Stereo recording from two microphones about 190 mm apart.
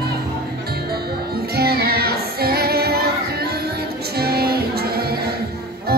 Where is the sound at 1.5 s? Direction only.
55° right (ahead or behind).